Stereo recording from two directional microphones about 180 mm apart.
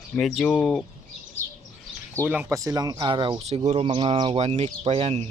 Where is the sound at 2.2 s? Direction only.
5° right (ahead or behind).